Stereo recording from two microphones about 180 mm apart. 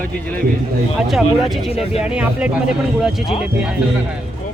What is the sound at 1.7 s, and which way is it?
Speech, 35° left (ahead or behind).